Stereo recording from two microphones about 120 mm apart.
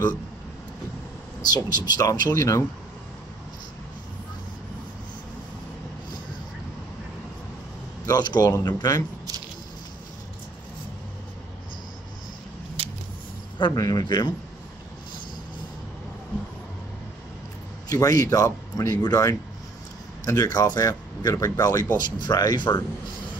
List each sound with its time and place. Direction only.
1.4 s speech: 35° left (ahead or behind)
8.1 s speech: 35° left (ahead or behind)
12.8 s vehicle: 50° right (ahead or behind)
13.6 s speech: 35° left (ahead or behind)
17.8 s speech: 30° left (ahead or behind)